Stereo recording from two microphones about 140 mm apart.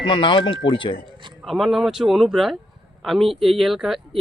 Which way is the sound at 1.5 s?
Centre (ahead or behind).